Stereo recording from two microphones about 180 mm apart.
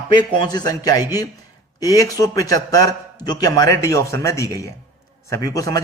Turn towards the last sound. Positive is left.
turn(degrees=20)  # may be behind; listen again after turning